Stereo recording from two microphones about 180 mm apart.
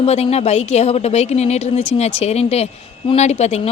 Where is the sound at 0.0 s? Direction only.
35° left (ahead or behind).